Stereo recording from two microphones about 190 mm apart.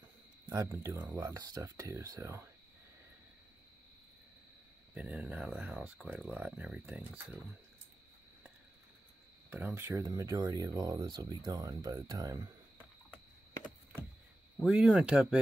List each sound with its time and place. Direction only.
0.5 s speech: 15° right (ahead or behind)
4.9 s speech: 5° right (ahead or behind)
9.5 s speech: 10° right (ahead or behind)
14.6 s speech: 5° right (ahead or behind)